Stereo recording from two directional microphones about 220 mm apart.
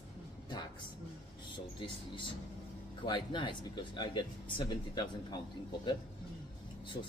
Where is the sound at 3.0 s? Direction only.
20° left (ahead or behind).